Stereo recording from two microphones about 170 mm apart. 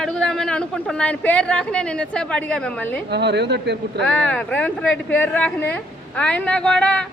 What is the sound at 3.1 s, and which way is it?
Speech, 85° right.